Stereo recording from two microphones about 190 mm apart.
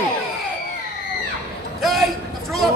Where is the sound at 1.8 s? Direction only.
Centre (ahead or behind).